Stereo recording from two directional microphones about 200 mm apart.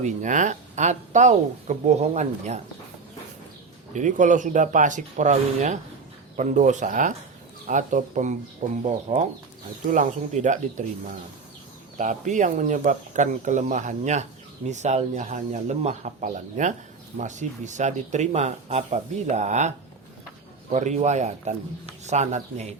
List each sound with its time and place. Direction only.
0.0 s speech: 40° right (ahead or behind)
3.9 s speech: 40° right (ahead or behind)
11.9 s speech: 40° right (ahead or behind)